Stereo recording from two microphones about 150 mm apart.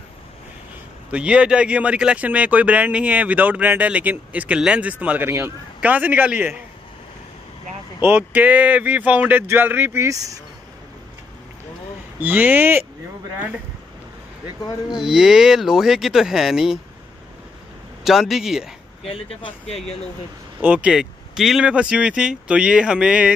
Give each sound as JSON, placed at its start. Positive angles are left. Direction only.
{"t": 1.1, "sound": "speech", "side_deg": -5}
{"t": 8.0, "sound": "speech", "side_deg": -10}
{"t": 12.2, "sound": "speech", "side_deg": -10}
{"t": 14.9, "sound": "speech", "side_deg": -5}
{"t": 18.0, "sound": "speech", "side_deg": 0}
{"t": 19.0, "sound": "speech", "side_deg": 40}
{"t": 20.6, "sound": "speech", "side_deg": -10}